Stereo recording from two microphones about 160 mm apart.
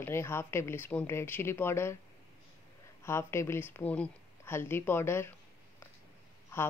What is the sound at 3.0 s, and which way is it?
Speech, 15° left (ahead or behind).